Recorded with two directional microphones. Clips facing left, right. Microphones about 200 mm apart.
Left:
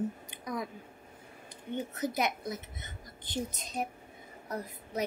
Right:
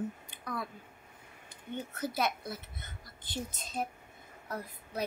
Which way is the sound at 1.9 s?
15° left (ahead or behind).